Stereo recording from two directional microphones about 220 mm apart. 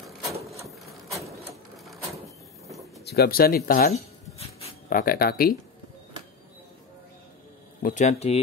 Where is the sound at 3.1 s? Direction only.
45° left (ahead or behind).